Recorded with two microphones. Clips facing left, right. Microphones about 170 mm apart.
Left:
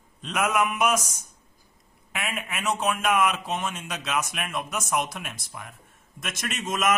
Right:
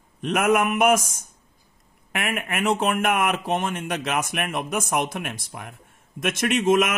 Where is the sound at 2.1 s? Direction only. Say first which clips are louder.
Right 5 dB; 55° right (ahead or behind).